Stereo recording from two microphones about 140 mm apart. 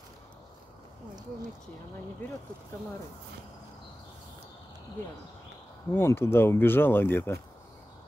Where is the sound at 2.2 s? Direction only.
10° left (ahead or behind).